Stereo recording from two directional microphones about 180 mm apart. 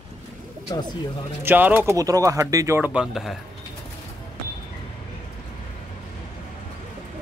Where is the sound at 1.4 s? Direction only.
10° right (ahead or behind).